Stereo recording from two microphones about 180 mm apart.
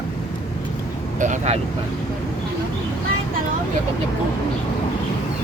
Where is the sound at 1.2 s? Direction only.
40° right (ahead or behind).